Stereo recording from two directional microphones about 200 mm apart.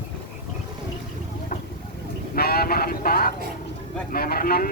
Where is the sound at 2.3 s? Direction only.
50° left (ahead or behind).